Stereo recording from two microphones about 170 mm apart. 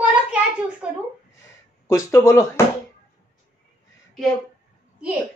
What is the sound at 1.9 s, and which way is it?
Speech, 20° left (ahead or behind).